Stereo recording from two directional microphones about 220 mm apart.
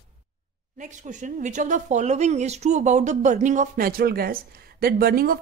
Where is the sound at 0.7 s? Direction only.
35° right (ahead or behind).